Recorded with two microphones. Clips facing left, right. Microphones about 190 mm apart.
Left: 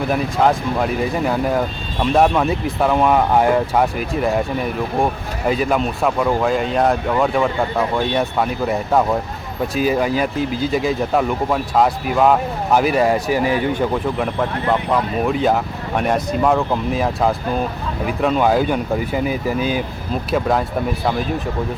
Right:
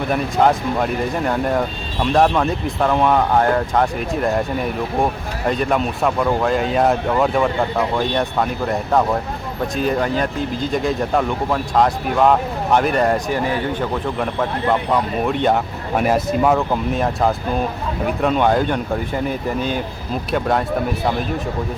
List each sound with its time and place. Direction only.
0.1 s speech: centre (ahead or behind)
15.3 s speech: centre (ahead or behind)